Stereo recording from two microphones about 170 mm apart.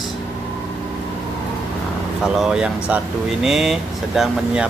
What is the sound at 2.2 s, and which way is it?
Speech, 5° right (ahead or behind).